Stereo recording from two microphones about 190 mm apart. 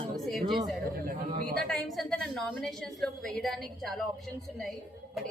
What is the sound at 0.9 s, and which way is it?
Speech, 50° right (ahead or behind).